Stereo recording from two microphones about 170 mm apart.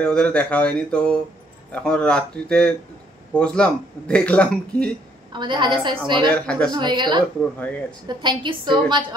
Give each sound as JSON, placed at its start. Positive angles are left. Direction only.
{"t": 0.0, "sound": "speech", "side_deg": 5}
{"t": 5.3, "sound": "a woman's voice", "side_deg": -25}
{"t": 6.3, "sound": "speech", "side_deg": 5}
{"t": 6.7, "sound": "a woman's voice", "side_deg": -25}